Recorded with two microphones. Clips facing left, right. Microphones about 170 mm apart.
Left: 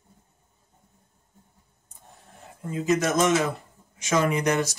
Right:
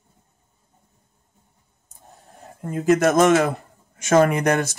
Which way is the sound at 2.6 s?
55° right (ahead or behind).